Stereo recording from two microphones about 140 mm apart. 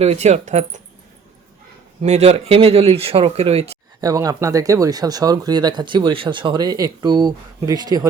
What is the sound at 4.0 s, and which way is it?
Speech, 25° right (ahead or behind).